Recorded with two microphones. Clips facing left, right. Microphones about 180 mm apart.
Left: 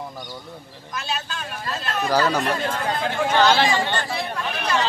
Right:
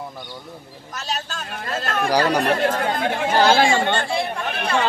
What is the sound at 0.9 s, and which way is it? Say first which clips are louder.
Speech: even; 40° right (ahead or behind).